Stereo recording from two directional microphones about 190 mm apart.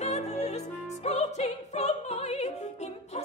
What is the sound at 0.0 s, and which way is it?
Music, 35° left (ahead or behind).